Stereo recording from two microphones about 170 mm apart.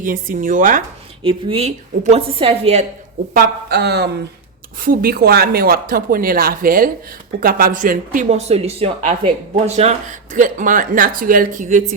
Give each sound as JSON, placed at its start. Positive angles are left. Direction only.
{"t": 0.0, "sound": "speech", "side_deg": -50}
{"t": 1.2, "sound": "a woman's voice", "side_deg": -35}
{"t": 3.3, "sound": "speech", "side_deg": -70}
{"t": 4.8, "sound": "a woman's voice", "side_deg": -60}